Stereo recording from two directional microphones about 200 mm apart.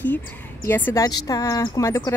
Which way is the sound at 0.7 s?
10° left (ahead or behind).